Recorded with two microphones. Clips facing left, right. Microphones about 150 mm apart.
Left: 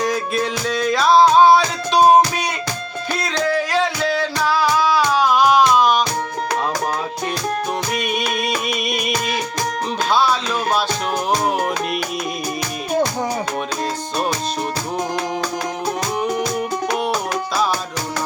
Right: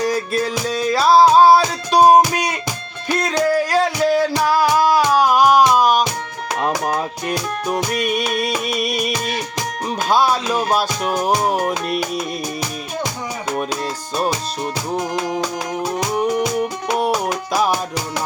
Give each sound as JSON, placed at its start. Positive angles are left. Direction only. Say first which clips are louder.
{"t": 0.7, "sound": "music", "louder": "right 1 dB", "side_deg": -5}
{"t": 1.9, "sound": "music", "louder": "right 1 dB", "side_deg": -40}
{"t": 3.5, "sound": "music", "louder": "right 2 dB", "side_deg": -40}
{"t": 7.3, "sound": "music", "louder": "left 1 dB", "side_deg": -45}
{"t": 11.5, "sound": "music", "louder": "right 1 dB", "side_deg": -40}
{"t": 17.1, "sound": "music", "louder": "right 2 dB", "side_deg": -15}